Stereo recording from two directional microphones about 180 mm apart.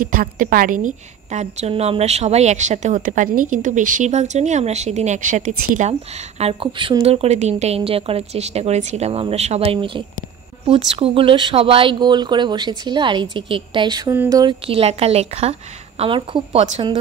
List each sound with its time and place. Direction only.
0.0 s a woman's voice: 50° right (ahead or behind)
6.4 s a woman's voice: 30° right (ahead or behind)
14.1 s speech: 10° right (ahead or behind)
14.4 s a woman's voice: 35° right (ahead or behind)